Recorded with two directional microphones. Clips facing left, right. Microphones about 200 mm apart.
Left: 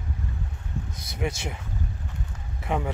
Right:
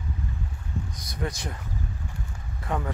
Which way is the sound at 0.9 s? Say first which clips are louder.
Even; 25° left (ahead or behind).